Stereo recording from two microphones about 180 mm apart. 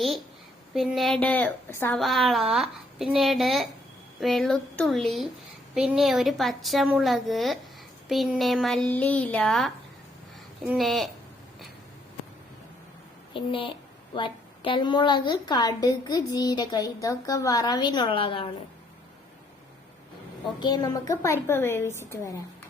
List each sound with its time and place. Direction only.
0.7 s a woman's voice: centre (ahead or behind)
2.0 s a woman's voice: centre (ahead or behind)
13.3 s a woman's voice: 30° left (ahead or behind)
20.6 s a woman's voice: 25° left (ahead or behind)